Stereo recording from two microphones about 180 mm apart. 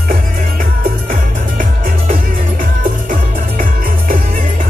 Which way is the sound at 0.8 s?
50° right (ahead or behind).